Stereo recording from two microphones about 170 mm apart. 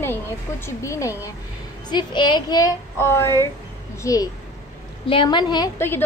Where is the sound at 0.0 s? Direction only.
15° left (ahead or behind).